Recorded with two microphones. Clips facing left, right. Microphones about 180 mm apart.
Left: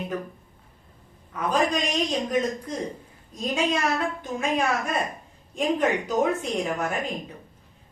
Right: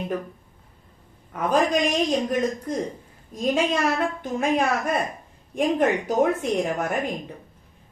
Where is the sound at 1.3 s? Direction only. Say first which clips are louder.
Right 3 dB; 55° right (ahead or behind).